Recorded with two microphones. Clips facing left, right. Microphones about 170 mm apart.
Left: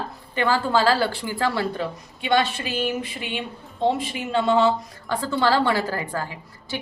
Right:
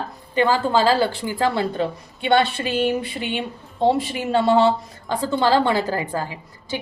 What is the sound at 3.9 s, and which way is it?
Speech, 35° right (ahead or behind).